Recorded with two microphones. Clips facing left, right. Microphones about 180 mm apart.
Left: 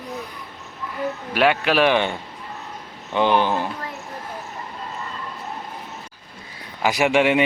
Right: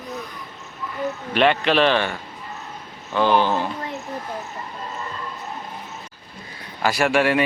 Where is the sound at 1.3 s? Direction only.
5° left (ahead or behind).